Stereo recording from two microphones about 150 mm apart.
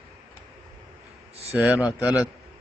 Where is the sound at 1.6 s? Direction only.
10° right (ahead or behind).